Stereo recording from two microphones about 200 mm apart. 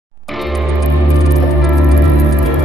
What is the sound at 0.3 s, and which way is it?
Music, centre (ahead or behind).